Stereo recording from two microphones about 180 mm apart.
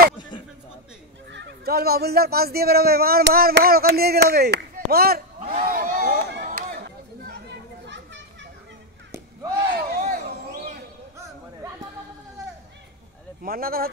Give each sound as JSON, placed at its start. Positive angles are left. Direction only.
{"t": 1.3, "sound": "speech", "side_deg": -60}
{"t": 5.6, "sound": "a sound", "side_deg": -50}
{"t": 6.3, "sound": "run", "side_deg": -60}
{"t": 7.8, "sound": "children playing", "side_deg": -80}
{"t": 9.8, "sound": "a sound", "side_deg": -50}
{"t": 13.4, "sound": "speech", "side_deg": -55}